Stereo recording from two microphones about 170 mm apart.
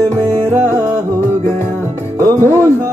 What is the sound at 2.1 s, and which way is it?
Music, 15° right (ahead or behind).